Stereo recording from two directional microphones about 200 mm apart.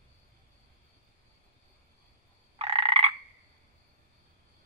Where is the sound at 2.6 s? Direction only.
30° right (ahead or behind).